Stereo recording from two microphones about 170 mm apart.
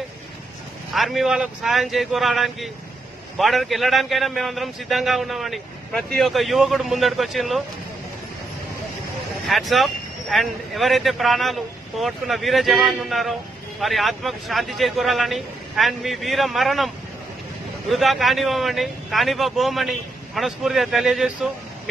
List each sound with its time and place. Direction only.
0.9 s speech: centre (ahead or behind)
9.5 s speech: centre (ahead or behind)